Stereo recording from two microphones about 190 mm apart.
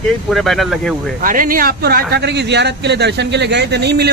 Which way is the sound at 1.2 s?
45° right (ahead or behind).